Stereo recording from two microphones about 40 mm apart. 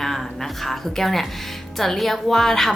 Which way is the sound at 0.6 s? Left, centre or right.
Centre.